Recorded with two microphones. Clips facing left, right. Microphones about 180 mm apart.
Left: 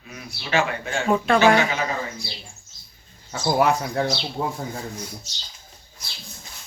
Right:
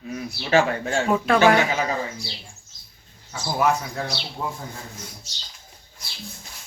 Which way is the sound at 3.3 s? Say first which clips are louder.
Left 2 dB; 65° left (ahead or behind).